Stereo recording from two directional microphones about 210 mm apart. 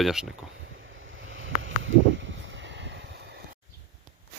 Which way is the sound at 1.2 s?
65° right (ahead or behind).